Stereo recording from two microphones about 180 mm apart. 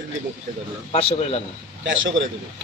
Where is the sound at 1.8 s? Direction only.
90° right.